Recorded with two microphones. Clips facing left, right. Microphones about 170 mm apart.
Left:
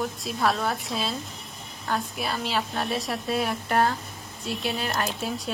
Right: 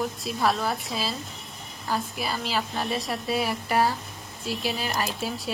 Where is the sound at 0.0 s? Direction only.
Centre (ahead or behind).